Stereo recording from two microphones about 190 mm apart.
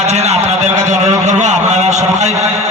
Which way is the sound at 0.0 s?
35° right (ahead or behind).